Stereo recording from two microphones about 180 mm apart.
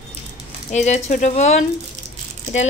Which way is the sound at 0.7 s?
40° left (ahead or behind).